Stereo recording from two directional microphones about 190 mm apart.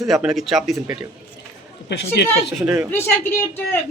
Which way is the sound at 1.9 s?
65° left (ahead or behind).